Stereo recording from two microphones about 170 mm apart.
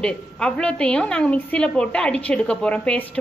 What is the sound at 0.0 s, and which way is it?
A woman's voice, 5° left (ahead or behind).